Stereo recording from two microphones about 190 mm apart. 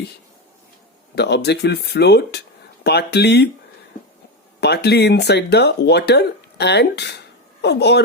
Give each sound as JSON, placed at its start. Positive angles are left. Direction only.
{"t": 1.1, "sound": "speech", "side_deg": 60}
{"t": 4.6, "sound": "speech", "side_deg": 60}